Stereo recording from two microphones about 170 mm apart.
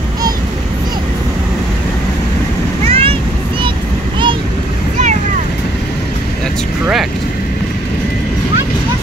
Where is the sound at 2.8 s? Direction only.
35° right (ahead or behind).